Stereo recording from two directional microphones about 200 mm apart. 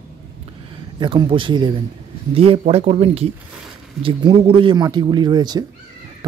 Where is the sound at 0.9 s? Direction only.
25° right (ahead or behind).